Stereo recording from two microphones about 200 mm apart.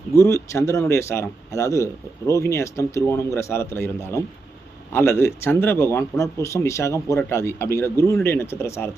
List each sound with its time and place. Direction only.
0.1 s a man's voice: 15° left (ahead or behind)